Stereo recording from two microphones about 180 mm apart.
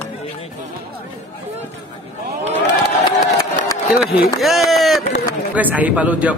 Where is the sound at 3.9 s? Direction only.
5° right (ahead or behind).